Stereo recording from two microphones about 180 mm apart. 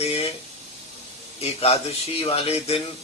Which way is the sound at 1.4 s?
35° left (ahead or behind).